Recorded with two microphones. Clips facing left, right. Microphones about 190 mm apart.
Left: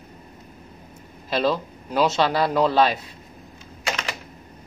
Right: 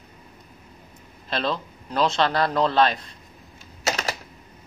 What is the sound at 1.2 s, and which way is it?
Speech, 10° left (ahead or behind).